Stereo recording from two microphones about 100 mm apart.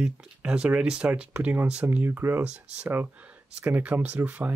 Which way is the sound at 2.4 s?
10° right (ahead or behind).